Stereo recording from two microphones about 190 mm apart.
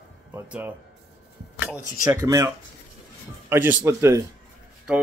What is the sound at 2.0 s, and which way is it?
Speech, 15° right (ahead or behind).